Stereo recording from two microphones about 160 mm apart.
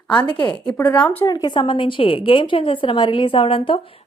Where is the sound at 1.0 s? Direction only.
10° left (ahead or behind).